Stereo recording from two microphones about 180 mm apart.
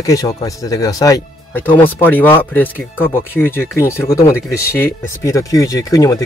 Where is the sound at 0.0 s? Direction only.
20° left (ahead or behind).